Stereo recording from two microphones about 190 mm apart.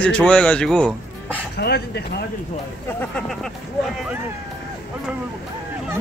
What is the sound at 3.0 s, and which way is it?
Speech, 5° left (ahead or behind).